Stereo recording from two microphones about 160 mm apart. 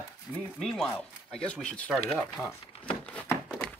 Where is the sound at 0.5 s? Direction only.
5° left (ahead or behind).